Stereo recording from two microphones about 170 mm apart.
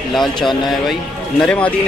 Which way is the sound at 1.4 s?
5° left (ahead or behind).